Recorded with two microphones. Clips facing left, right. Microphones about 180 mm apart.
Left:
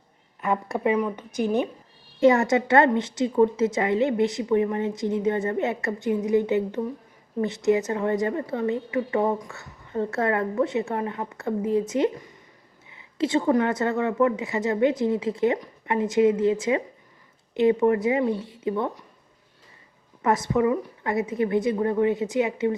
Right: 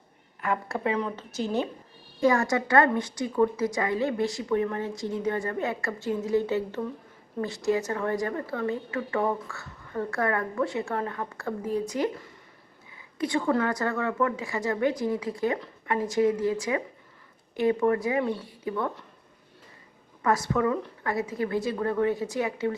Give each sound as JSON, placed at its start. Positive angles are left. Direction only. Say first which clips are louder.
{"t": 0.4, "sound": "a woman's voice", "louder": "left 4 dB", "side_deg": 20}
{"t": 20.2, "sound": "a woman's voice", "louder": "left 3 dB", "side_deg": 20}